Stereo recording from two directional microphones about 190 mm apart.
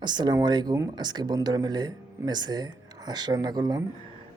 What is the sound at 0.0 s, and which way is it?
Speech, 25° right (ahead or behind).